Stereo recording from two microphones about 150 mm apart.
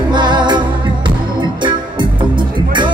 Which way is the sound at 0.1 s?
30° right (ahead or behind).